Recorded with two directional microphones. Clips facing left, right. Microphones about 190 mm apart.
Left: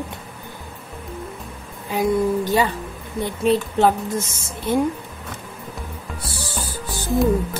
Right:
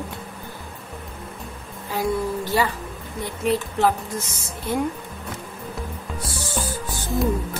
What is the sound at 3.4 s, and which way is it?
Speech, 30° left (ahead or behind).